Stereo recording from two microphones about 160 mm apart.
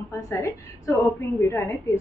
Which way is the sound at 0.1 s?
15° left (ahead or behind).